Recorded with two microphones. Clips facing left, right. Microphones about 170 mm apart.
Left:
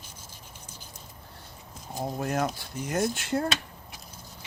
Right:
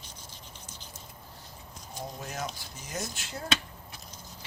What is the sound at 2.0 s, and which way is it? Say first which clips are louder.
Speech: left 9 dB; 55° left (ahead or behind).